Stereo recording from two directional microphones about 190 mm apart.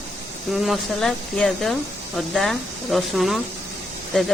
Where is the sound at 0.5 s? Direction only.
Centre (ahead or behind).